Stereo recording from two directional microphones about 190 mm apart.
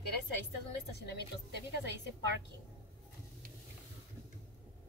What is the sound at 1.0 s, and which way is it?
A woman's voice, 60° left (ahead or behind).